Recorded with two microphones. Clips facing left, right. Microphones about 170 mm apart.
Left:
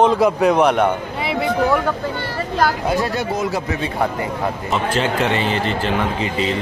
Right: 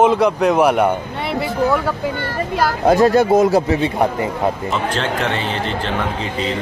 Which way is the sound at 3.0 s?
45° right (ahead or behind).